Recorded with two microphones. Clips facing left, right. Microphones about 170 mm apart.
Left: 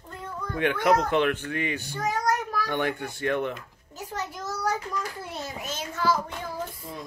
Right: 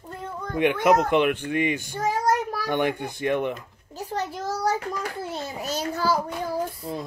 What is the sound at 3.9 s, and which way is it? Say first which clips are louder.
A child's voice: right 5 dB; 35° right (ahead or behind).